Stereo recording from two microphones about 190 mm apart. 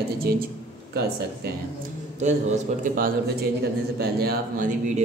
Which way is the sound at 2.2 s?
40° right (ahead or behind).